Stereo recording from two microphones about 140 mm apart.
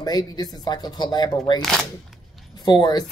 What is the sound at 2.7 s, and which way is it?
Speech, 30° left (ahead or behind).